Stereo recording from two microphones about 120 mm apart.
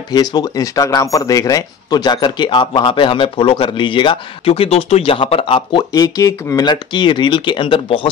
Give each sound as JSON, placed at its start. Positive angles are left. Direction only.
{"t": 0.1, "sound": "speech", "side_deg": 35}